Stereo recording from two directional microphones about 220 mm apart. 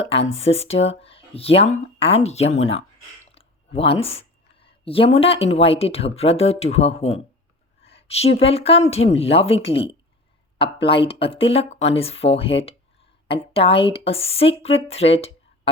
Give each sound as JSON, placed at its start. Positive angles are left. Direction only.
{"t": 0.3, "sound": "a woman's voice", "side_deg": 30}
{"t": 7.8, "sound": "a sound", "side_deg": 25}
{"t": 8.4, "sound": "a woman's voice", "side_deg": 25}